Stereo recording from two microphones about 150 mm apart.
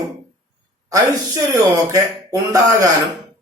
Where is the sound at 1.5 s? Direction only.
20° right (ahead or behind).